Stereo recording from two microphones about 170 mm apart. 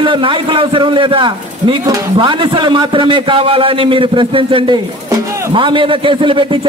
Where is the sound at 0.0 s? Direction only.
30° right (ahead or behind).